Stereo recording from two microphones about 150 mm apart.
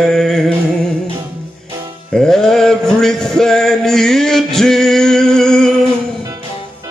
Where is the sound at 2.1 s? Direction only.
5° left (ahead or behind).